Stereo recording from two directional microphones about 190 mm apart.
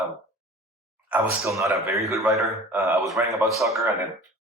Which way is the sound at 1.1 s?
15° right (ahead or behind).